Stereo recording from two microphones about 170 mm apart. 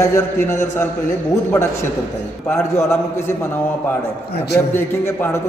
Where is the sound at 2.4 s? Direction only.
15° left (ahead or behind).